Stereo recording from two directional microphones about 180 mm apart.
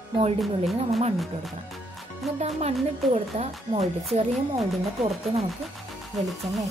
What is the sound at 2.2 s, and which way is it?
Speech, centre (ahead or behind).